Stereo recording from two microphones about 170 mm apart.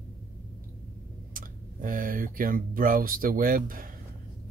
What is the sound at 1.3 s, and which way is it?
Speech, 55° right (ahead or behind).